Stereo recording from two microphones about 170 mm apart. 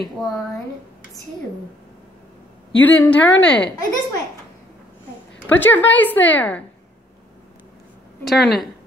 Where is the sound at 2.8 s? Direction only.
10° left (ahead or behind).